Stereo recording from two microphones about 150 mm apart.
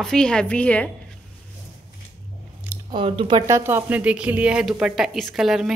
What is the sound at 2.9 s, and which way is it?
Speech, 35° right (ahead or behind).